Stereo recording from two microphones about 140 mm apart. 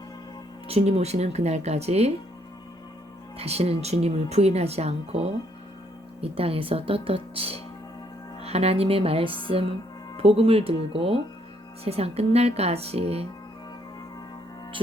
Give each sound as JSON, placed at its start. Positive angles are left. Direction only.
{"t": 0.7, "sound": "speech", "side_deg": -50}
{"t": 3.3, "sound": "speech", "side_deg": -50}